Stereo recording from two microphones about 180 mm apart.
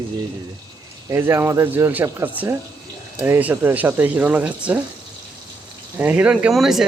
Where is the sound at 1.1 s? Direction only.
15° right (ahead or behind).